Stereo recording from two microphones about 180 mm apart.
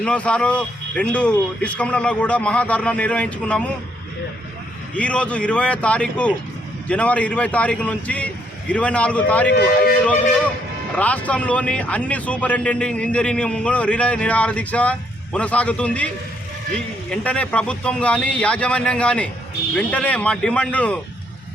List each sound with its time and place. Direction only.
0.0 s a man's voice: 5° left (ahead or behind)
4.9 s a man's voice: 5° left (ahead or behind)
9.5 s speech: 60° left (ahead or behind)
10.9 s a man's voice: 10° left (ahead or behind)